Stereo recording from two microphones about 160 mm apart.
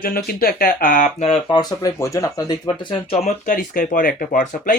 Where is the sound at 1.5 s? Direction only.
25° left (ahead or behind).